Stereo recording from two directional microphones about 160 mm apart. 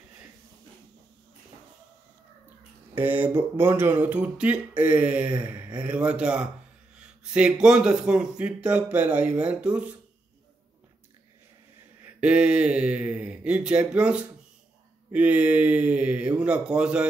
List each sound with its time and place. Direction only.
2.9 s speech: 10° right (ahead or behind)
12.2 s speech: 5° right (ahead or behind)